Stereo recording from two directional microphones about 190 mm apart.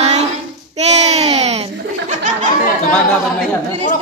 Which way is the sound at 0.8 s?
35° right (ahead or behind).